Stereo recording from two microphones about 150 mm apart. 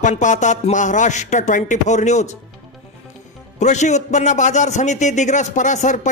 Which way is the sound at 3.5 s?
50° left (ahead or behind).